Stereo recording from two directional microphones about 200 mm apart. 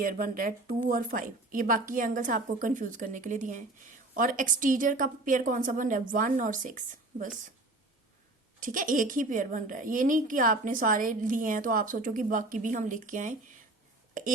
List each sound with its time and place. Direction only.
0.0 s a woman's voice: 45° right (ahead or behind)
8.6 s a woman's voice: 40° right (ahead or behind)
14.1 s a sound: 40° right (ahead or behind)